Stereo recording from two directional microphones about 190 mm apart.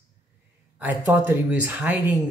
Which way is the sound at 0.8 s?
10° right (ahead or behind).